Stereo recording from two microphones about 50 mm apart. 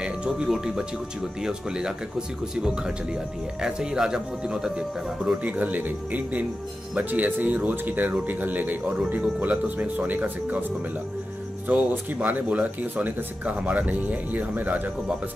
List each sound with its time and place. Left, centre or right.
0.5 s speech: centre
5.4 s speech: right
11.7 s speech: right